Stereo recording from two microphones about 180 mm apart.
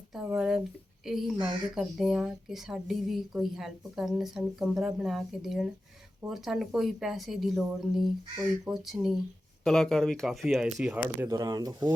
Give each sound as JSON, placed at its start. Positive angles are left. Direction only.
{"t": 0.1, "sound": "speech", "side_deg": -5}
{"t": 11.3, "sound": "speech", "side_deg": -20}